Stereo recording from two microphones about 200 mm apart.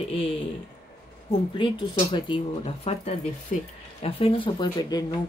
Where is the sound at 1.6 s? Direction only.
25° left (ahead or behind); by 3.7 s 40° left (ahead or behind).